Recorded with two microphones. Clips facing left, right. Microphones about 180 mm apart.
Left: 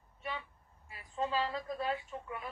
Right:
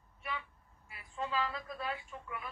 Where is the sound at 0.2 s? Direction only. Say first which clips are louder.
Left 1 dB; 30° left (ahead or behind).